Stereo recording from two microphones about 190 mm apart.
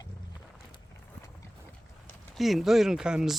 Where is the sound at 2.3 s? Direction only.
Centre (ahead or behind).